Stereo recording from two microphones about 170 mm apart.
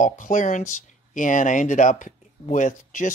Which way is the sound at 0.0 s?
50° left (ahead or behind).